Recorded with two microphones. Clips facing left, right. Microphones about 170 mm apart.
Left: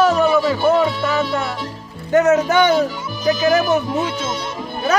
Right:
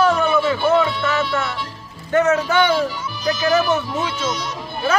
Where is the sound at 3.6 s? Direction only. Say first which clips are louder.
Left 2 dB; 15° left (ahead or behind).